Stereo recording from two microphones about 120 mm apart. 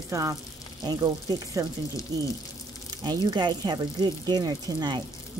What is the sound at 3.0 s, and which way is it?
Speech, 35° right (ahead or behind).